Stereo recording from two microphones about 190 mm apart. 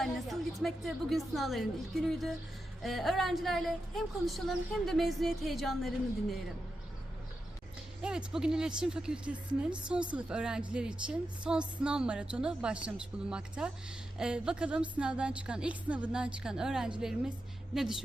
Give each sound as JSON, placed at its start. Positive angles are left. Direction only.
{"t": 0.0, "sound": "a woman's voice", "side_deg": 0}
{"t": 8.0, "sound": "a woman's voice", "side_deg": -5}